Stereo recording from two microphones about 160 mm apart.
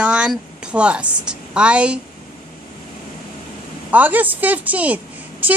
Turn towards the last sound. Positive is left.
turn(degrees=-10)  # may be behind; listen again after turning